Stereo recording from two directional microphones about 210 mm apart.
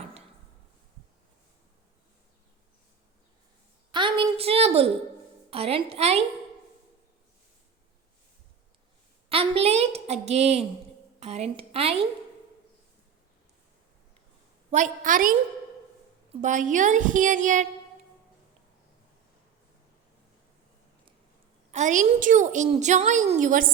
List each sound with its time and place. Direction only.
3.9 s a sound: 25° right (ahead or behind)
5.5 s a woman's voice: 30° right (ahead or behind)
9.3 s a woman's voice: 25° right (ahead or behind)
14.7 s a woman's voice: 35° right (ahead or behind)
21.7 s a woman's voice: 35° right (ahead or behind)